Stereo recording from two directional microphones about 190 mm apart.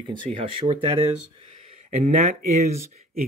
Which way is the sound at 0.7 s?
30° right (ahead or behind).